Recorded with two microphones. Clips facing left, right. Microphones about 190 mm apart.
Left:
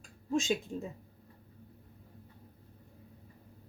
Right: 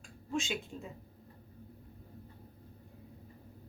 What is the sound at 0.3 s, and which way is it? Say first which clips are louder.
Speech: left 5 dB; 40° left (ahead or behind).